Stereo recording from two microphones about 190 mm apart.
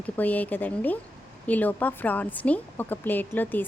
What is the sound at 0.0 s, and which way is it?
A woman's voice, 10° left (ahead or behind).